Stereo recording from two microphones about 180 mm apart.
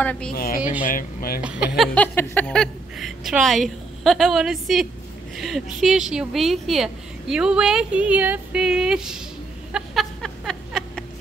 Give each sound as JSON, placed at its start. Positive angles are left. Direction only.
{"t": 0.0, "sound": "speech", "side_deg": 5}
{"t": 0.3, "sound": "speech", "side_deg": 55}
{"t": 1.4, "sound": "speech", "side_deg": -5}
{"t": 2.0, "sound": "speech", "side_deg": 10}
{"t": 9.7, "sound": "a sound", "side_deg": 0}